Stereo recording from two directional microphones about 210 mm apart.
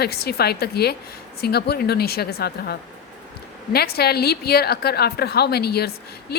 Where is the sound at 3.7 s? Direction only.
50° left (ahead or behind).